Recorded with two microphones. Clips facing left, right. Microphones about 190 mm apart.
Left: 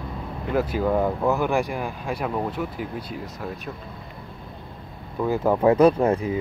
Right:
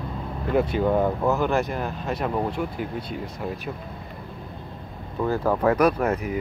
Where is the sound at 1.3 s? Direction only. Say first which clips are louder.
Even; 15° left (ahead or behind).